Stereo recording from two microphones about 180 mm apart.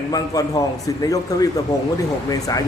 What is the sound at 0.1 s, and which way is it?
A man's voice, 20° left (ahead or behind).